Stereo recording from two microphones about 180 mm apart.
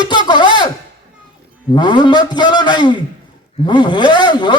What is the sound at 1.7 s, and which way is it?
A man's voice, 25° left (ahead or behind).